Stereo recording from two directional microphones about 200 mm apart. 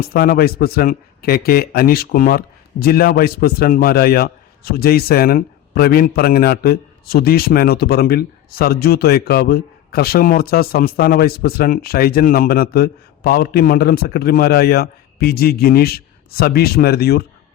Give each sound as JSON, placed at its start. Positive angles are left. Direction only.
{"t": 0.0, "sound": "speech", "side_deg": 50}